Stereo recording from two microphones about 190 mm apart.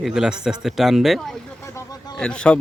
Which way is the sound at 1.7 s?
20° left (ahead or behind).